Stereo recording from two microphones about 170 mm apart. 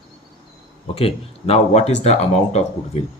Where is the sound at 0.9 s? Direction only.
35° left (ahead or behind).